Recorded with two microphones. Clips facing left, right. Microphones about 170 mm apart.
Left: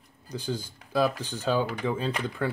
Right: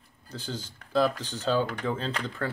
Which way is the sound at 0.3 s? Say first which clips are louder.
Left 4 dB; 10° left (ahead or behind).